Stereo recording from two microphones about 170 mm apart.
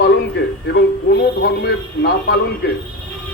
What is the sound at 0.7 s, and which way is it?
Speech, 80° left.